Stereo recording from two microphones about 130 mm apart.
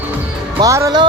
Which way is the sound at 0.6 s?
25° right (ahead or behind).